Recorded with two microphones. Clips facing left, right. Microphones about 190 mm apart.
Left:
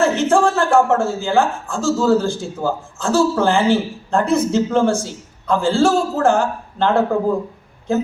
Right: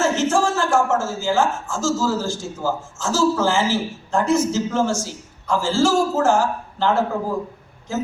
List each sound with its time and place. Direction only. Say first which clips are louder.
0.0 s a man's voice: left 4 dB; 60° left (ahead or behind)